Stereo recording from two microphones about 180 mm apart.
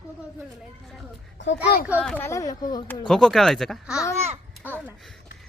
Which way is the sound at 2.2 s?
20° left (ahead or behind).